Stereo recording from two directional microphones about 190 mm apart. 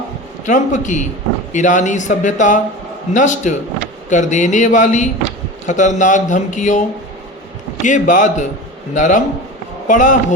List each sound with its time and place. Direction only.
0.4 s speech: 40° left (ahead or behind)
7.9 s speech: 40° left (ahead or behind)